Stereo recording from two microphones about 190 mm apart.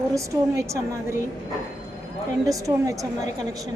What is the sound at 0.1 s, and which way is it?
A woman's voice, 15° right (ahead or behind).